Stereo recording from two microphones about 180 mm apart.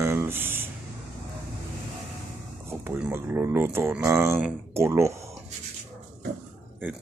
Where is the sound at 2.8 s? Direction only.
10° right (ahead or behind).